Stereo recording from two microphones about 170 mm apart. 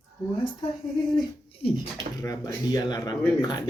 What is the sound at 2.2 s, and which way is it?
Speech, 20° left (ahead or behind).